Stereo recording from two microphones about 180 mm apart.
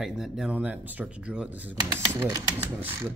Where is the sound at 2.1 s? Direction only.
20° right (ahead or behind).